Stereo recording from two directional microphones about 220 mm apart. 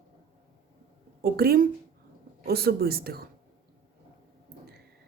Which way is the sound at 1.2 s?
45° right (ahead or behind).